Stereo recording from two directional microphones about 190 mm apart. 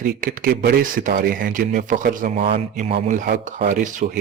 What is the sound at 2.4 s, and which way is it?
Speech, 30° right (ahead or behind).